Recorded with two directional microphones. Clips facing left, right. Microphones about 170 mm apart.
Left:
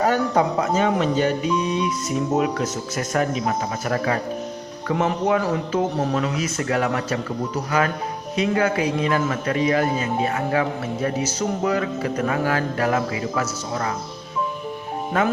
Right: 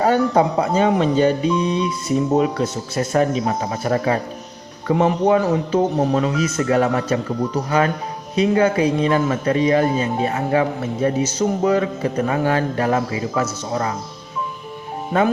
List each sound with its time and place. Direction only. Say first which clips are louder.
0.0 s speech: right 3 dB; 30° right (ahead or behind)
8.4 s speech: right 5 dB; 30° right (ahead or behind)